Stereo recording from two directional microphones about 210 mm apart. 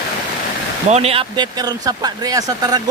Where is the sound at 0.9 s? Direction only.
30° right (ahead or behind).